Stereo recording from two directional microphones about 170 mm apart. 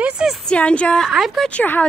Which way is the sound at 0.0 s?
Centre (ahead or behind).